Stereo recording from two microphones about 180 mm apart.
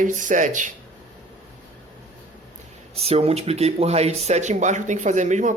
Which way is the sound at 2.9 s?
35° right (ahead or behind).